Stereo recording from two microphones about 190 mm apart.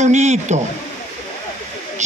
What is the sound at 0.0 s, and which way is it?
Speech, 40° right (ahead or behind).